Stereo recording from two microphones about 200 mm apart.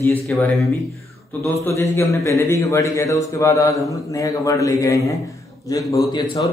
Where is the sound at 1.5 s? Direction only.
15° left (ahead or behind).